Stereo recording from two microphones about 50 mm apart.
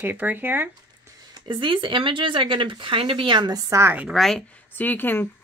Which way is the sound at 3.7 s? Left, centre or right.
Right.